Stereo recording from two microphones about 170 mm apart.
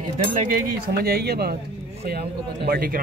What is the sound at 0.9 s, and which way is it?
Speech, 65° right (ahead or behind).